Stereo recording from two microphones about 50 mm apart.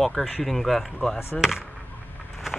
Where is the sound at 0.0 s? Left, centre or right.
Centre.